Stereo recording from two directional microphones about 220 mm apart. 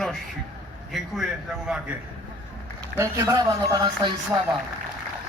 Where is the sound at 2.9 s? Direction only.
10° right (ahead or behind).